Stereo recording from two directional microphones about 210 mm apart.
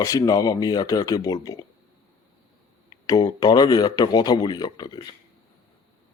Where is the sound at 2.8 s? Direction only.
15° left (ahead or behind).